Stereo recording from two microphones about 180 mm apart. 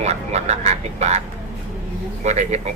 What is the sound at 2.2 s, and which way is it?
Speech, 40° right (ahead or behind).